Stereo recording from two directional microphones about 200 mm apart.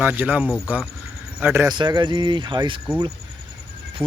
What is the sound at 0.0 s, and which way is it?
Speech, 10° right (ahead or behind).